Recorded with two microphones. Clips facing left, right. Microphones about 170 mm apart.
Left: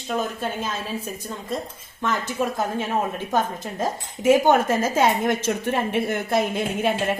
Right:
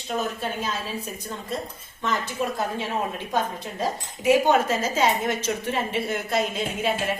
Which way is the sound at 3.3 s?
45° left (ahead or behind).